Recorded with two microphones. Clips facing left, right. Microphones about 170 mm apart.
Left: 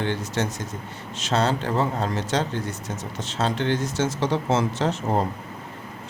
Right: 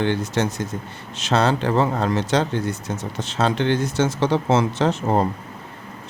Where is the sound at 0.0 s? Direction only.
70° right (ahead or behind).